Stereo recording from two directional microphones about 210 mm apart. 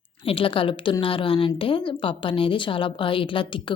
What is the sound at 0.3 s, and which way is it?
Speech, 25° left (ahead or behind).